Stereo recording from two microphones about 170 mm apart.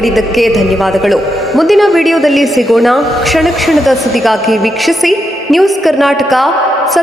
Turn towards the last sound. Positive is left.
turn(degrees=0)  # may be behind; listen again after turning